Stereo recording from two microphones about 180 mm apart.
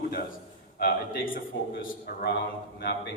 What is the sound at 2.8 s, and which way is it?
Speech, 70° left (ahead or behind).